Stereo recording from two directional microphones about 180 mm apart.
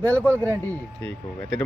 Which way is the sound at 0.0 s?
10° left (ahead or behind).